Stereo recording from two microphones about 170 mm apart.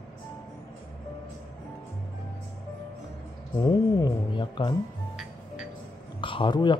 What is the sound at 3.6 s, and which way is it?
Speech, 25° left (ahead or behind).